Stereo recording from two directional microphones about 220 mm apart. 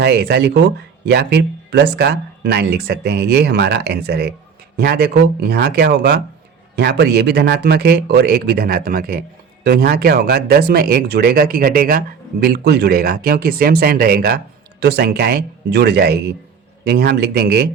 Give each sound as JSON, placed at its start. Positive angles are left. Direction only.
{"t": 0.0, "sound": "speech", "side_deg": -45}